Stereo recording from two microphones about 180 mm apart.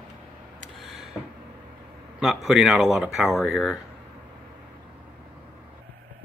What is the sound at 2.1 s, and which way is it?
A man's voice, centre (ahead or behind).